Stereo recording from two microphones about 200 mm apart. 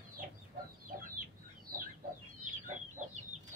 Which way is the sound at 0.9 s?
50° right (ahead or behind).